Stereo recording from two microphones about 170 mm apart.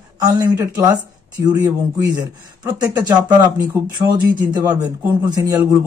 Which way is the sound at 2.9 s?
20° right (ahead or behind).